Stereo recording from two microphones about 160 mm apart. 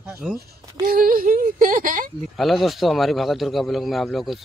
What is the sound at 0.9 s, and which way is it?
Speech, 60° right (ahead or behind).